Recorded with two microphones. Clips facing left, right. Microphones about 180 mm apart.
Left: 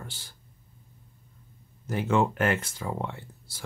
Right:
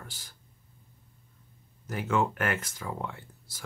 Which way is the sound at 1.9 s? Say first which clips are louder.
Left 3 dB; 25° left (ahead or behind).